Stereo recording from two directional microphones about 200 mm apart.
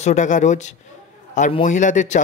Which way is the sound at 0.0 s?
35° left (ahead or behind).